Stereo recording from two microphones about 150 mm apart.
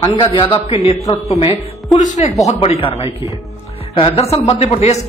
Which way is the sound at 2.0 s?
55° left (ahead or behind).